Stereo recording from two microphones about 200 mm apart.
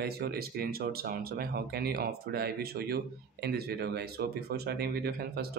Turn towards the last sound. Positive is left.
turn(degrees=-50)  # may be behind; listen again after turning